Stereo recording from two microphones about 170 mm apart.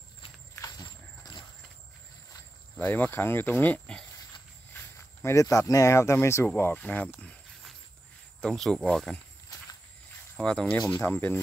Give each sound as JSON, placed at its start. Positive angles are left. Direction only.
{"t": 0.6, "sound": "walk", "side_deg": 25}
{"t": 2.8, "sound": "speech", "side_deg": 10}
{"t": 5.2, "sound": "speech", "side_deg": 20}
{"t": 10.3, "sound": "speech", "side_deg": 5}